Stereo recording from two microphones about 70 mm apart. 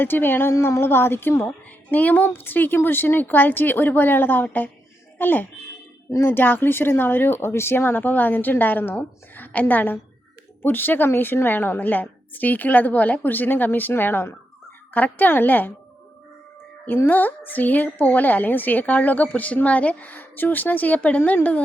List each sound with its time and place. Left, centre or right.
0.0 s a woman's voice: left
0.5 s a woman's voice: left
1.5 s a woman's voice: left
17.1 s a woman's voice: left